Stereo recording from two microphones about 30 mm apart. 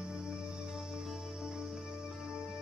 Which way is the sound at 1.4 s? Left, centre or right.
Centre.